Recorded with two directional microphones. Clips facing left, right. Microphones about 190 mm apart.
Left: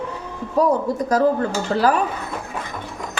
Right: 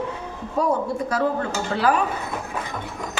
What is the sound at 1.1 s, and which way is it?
Speech, 40° left (ahead or behind).